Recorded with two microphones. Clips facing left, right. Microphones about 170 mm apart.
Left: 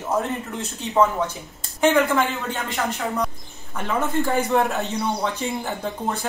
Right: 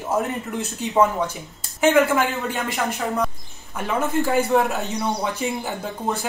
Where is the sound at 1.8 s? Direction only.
5° right (ahead or behind).